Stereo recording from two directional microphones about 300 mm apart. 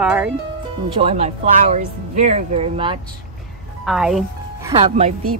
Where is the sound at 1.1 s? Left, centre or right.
Right.